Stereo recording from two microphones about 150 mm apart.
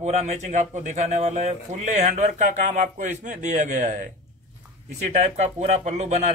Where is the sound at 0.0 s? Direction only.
50° right (ahead or behind).